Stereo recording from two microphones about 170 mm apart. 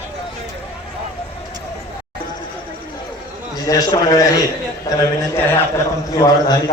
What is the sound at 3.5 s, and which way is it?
Speech, 20° left (ahead or behind).